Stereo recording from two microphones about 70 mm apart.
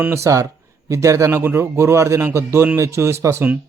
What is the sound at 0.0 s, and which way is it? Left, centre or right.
Speech, right.